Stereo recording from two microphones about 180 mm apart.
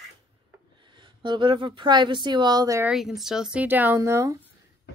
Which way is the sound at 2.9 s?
Centre (ahead or behind).